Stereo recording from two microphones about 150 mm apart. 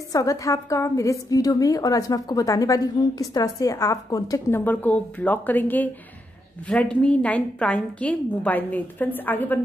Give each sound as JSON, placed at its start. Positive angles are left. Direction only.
{"t": 0.1, "sound": "a woman's voice", "side_deg": 20}